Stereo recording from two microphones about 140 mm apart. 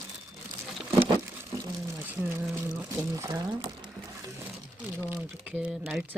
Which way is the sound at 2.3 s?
20° right (ahead or behind).